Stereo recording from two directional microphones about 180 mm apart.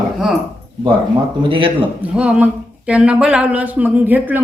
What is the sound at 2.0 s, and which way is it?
A woman's voice, 5° right (ahead or behind).